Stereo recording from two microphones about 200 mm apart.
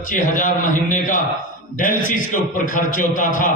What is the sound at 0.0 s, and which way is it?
A man's voice, 40° left (ahead or behind).